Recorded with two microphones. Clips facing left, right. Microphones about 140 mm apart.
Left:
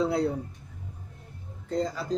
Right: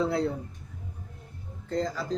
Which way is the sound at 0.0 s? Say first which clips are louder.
Left 1 dB; 15° left (ahead or behind).